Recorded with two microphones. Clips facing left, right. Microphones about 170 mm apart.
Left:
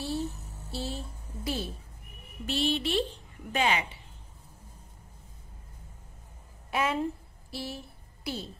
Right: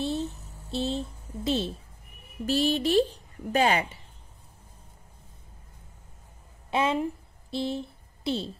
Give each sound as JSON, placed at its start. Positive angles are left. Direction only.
{"t": 0.0, "sound": "a sound", "side_deg": -20}
{"t": 2.4, "sound": "speech", "side_deg": -40}
{"t": 6.7, "sound": "a woman's voice", "side_deg": -25}